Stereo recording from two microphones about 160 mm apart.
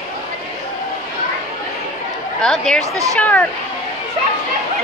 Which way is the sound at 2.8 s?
20° right (ahead or behind).